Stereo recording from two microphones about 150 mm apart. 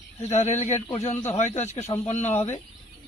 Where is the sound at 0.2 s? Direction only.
50° left (ahead or behind).